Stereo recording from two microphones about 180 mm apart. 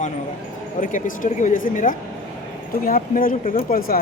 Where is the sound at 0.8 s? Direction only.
45° left (ahead or behind).